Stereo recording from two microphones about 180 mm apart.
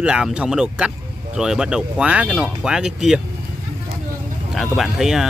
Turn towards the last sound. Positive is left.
turn(degrees=0)  # may be behind; listen again after turning